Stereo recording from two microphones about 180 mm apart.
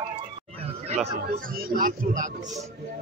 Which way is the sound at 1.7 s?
50° right (ahead or behind).